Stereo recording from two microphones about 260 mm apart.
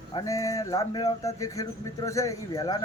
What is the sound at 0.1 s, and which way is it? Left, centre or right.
Speech, centre.